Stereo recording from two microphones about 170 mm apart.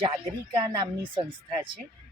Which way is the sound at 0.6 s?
30° right (ahead or behind).